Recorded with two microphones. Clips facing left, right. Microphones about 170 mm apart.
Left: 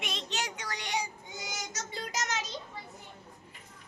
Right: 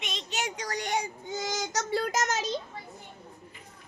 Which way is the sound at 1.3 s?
90° right.